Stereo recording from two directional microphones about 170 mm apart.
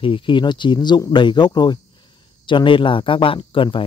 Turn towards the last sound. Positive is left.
turn(degrees=30)  # may be behind; listen again after turning